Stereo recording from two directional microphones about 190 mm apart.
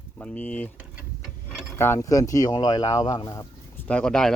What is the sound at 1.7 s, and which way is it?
Speech, 15° left (ahead or behind).